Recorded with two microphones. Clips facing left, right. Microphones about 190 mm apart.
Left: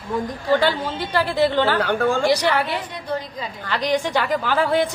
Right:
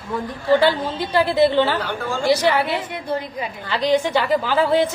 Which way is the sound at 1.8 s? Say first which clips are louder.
Left 6 dB; 60° left (ahead or behind).